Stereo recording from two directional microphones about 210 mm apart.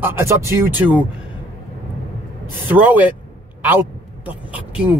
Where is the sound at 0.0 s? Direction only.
15° right (ahead or behind).